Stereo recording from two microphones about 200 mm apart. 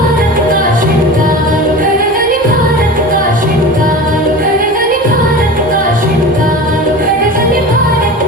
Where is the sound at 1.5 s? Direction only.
45° right (ahead or behind).